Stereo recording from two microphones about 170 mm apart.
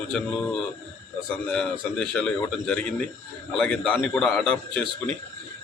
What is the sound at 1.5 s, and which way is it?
Speech, 5° left (ahead or behind).